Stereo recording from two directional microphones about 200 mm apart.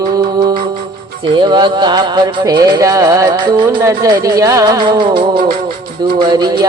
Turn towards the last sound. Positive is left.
turn(degrees=-20)  # may be behind; listen again after turning